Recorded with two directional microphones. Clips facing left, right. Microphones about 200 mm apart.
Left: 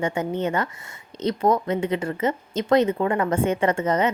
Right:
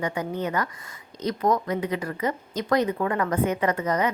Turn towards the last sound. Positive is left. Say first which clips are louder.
# left 3 dB
turn(degrees=25)  # may be behind; listen again after turning